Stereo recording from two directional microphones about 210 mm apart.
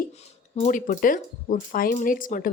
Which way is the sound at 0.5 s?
35° left (ahead or behind).